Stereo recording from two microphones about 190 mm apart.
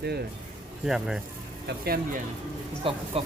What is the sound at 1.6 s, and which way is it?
Speech, 55° right (ahead or behind).